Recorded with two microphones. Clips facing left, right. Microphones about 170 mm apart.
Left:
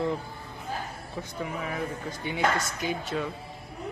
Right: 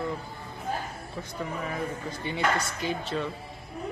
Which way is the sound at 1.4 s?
5° left (ahead or behind).